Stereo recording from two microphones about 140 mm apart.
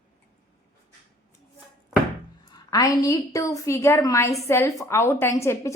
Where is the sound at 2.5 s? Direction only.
25° left (ahead or behind).